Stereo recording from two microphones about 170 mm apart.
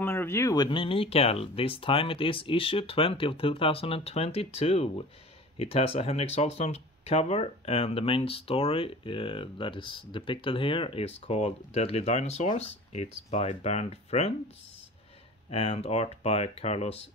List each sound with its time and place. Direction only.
0.0 s speech: 15° left (ahead or behind); by 14.3 s 40° left (ahead or behind)
15.5 s speech: 35° left (ahead or behind)